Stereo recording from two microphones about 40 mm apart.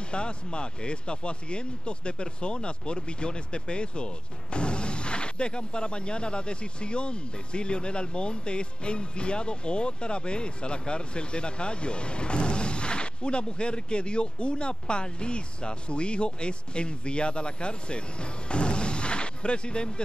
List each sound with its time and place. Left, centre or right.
0.1 s speech: left